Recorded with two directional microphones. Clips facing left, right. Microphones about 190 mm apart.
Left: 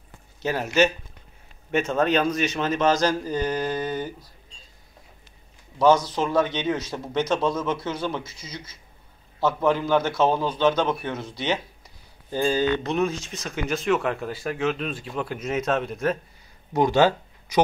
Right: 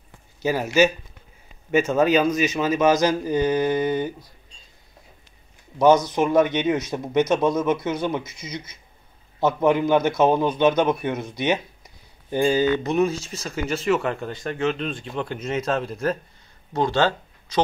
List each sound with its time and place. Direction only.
0.4 s speech: 5° right (ahead or behind)
5.8 s speech: 15° right (ahead or behind); by 16.2 s centre (ahead or behind)
16.7 s speech: 15° left (ahead or behind)